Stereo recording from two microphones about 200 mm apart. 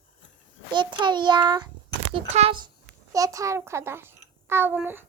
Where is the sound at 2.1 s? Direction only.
30° right (ahead or behind).